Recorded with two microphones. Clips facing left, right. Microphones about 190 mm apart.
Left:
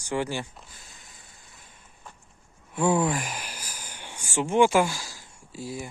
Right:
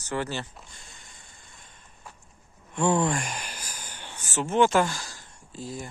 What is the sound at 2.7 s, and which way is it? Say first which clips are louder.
Speech: left 1 dB; 5° left (ahead or behind).